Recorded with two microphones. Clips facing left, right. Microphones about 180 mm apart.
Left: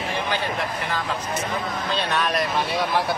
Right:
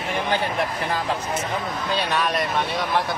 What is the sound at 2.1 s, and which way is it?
Speech, centre (ahead or behind).